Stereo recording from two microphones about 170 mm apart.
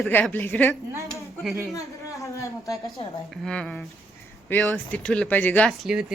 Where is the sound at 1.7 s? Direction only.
20° left (ahead or behind).